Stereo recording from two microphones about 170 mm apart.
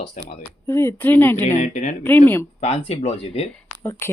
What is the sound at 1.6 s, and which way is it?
Speech, 45° left (ahead or behind).